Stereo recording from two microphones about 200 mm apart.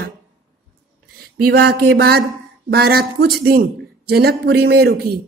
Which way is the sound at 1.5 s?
55° right (ahead or behind).